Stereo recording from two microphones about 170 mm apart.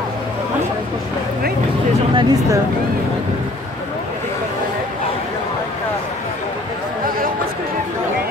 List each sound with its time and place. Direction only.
2.1 s speech: 25° right (ahead or behind)